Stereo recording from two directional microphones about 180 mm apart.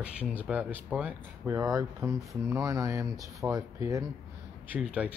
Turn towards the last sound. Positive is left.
turn(degrees=-5)  # may be behind; listen again after turning